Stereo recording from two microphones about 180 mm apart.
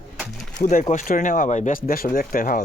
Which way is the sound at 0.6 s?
45° left (ahead or behind).